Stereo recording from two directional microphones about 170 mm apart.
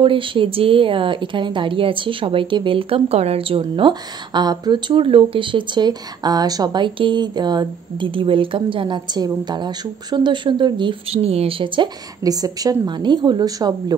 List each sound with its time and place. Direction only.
0.0 s speech: 30° right (ahead or behind)